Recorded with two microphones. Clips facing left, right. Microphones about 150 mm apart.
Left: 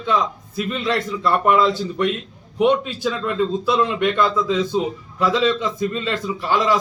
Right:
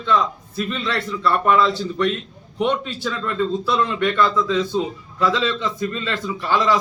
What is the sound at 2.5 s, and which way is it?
A man's voice, 10° left (ahead or behind).